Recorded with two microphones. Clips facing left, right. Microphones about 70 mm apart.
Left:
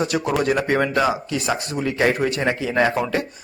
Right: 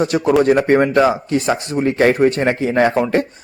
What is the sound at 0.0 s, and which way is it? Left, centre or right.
Speech, right.